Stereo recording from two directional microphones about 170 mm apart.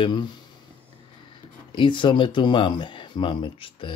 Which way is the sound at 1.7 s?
30° left (ahead or behind).